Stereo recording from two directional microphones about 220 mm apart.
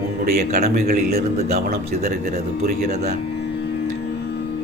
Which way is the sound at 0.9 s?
45° right (ahead or behind).